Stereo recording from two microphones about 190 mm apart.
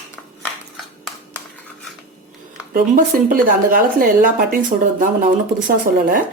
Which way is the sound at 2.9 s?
45° right (ahead or behind).